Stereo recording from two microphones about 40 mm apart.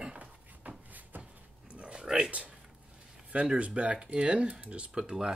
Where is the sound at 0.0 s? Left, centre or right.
Right.